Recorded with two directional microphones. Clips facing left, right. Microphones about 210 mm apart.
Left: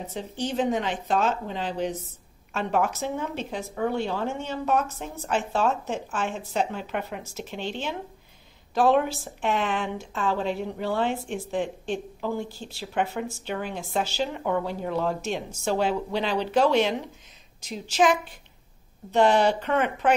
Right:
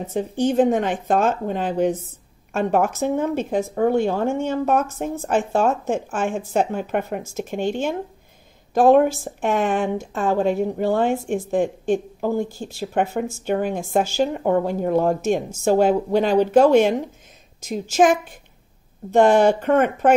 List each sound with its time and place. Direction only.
0.1 s speech: 50° right (ahead or behind)